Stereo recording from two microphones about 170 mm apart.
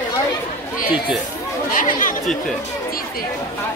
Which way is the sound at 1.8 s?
50° left (ahead or behind).